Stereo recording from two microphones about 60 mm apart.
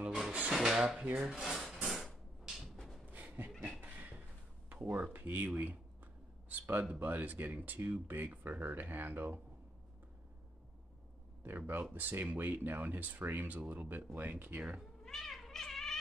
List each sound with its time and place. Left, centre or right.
0.5 s speech: centre
1.0 s speech: right
1.3 s wood: centre
2.4 s a sound: centre
2.7 s a sound: centre
3.1 s a sound: right
4.8 s speech: right
6.5 s speech: right
11.4 s speech: right
15.0 s cat: centre